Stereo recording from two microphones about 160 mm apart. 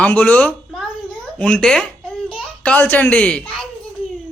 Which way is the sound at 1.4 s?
5° left (ahead or behind).